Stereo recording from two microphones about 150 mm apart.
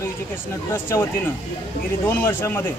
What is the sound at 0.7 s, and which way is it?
Speech, 15° left (ahead or behind).